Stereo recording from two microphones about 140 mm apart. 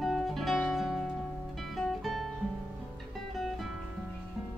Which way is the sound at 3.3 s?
Centre (ahead or behind).